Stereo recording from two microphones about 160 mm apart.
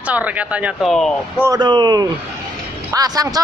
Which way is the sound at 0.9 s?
5° left (ahead or behind).